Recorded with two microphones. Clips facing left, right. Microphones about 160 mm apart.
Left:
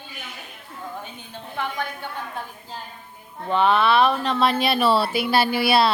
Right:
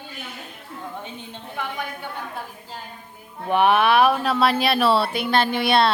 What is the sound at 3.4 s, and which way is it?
A woman's voice, 15° right (ahead or behind).